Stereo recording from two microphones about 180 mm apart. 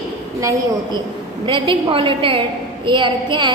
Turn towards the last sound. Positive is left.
turn(degrees=-25)  # may be behind; listen again after turning